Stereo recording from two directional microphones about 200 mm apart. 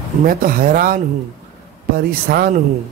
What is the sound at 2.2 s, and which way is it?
Speech, 50° right (ahead or behind).